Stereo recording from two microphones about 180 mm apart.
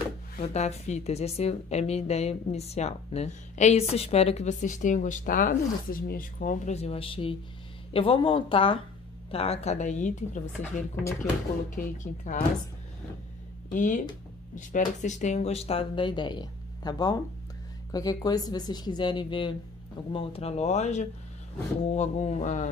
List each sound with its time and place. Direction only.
0.4 s speech: 35° left (ahead or behind)
11.7 s speech: 45° left (ahead or behind)
13.7 s speech: 45° left (ahead or behind)